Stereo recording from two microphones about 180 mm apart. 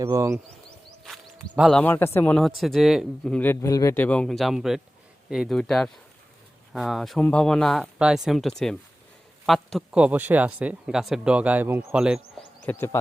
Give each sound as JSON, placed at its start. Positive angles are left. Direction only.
{"t": 0.0, "sound": "speech", "side_deg": -15}
{"t": 1.0, "sound": "a sound", "side_deg": 0}
{"t": 1.8, "sound": "speech", "side_deg": 10}
{"t": 12.6, "sound": "speech", "side_deg": 15}